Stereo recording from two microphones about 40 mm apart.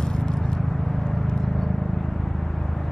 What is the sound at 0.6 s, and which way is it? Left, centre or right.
Vehicle, centre.